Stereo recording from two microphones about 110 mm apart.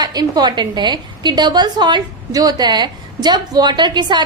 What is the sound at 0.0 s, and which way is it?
A woman's voice, 35° right (ahead or behind).